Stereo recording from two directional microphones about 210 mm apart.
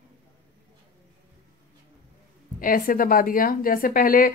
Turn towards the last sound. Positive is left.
turn(degrees=40)  # may be behind; listen again after turning